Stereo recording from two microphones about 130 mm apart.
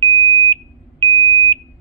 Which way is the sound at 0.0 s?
35° right (ahead or behind).